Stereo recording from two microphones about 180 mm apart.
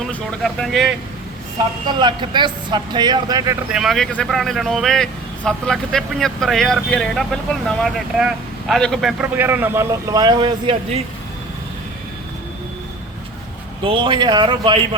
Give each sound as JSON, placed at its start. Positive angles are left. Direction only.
{"t": 0.1, "sound": "speech", "side_deg": 5}
{"t": 1.9, "sound": "speech", "side_deg": -25}
{"t": 3.7, "sound": "speech", "side_deg": 0}
{"t": 13.8, "sound": "speech", "side_deg": -30}